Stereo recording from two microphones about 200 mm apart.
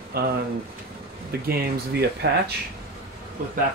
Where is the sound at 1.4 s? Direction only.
50° right (ahead or behind).